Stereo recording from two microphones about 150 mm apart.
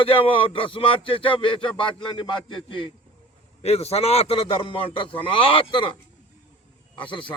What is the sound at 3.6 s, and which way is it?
A man's voice, 45° left (ahead or behind).